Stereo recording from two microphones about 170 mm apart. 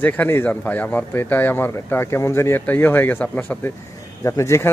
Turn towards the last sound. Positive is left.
turn(degrees=15)  # may be behind; listen again after turning